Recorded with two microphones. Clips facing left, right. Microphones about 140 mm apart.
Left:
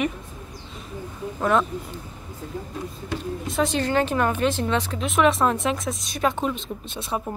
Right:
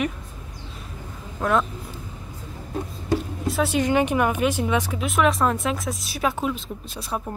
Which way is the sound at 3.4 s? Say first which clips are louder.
Right 2 dB; 5° right (ahead or behind).